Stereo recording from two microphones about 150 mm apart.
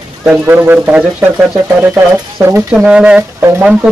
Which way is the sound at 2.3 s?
15° right (ahead or behind).